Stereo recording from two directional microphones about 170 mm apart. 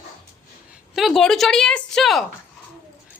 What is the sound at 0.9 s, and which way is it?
A woman's voice, centre (ahead or behind).